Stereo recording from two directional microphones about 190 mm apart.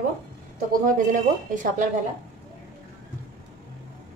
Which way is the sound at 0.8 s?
45° right (ahead or behind).